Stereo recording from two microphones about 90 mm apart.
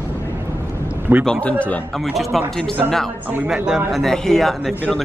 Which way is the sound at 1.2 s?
10° left (ahead or behind).